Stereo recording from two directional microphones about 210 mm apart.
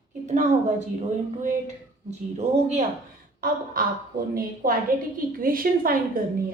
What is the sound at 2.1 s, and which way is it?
Speech, 35° right (ahead or behind).